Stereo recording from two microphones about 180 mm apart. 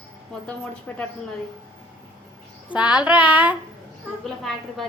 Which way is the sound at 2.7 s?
5° right (ahead or behind).